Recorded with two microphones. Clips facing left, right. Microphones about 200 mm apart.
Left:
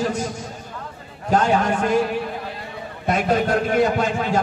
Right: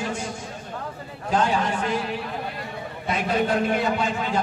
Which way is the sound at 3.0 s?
45° left (ahead or behind).